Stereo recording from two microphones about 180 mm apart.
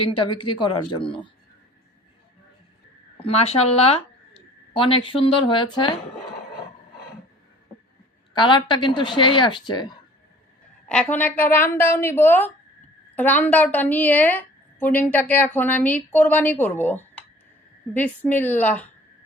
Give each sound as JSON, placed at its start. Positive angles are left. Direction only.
{"t": 0.0, "sound": "speech", "side_deg": 30}
{"t": 3.2, "sound": "speech", "side_deg": 35}
{"t": 8.3, "sound": "speech", "side_deg": 25}
{"t": 10.8, "sound": "a woman's voice", "side_deg": 5}